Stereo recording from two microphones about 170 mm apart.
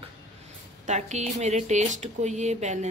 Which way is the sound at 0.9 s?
40° right (ahead or behind).